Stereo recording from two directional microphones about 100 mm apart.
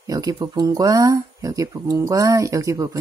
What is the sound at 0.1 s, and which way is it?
Speech, 40° right (ahead or behind).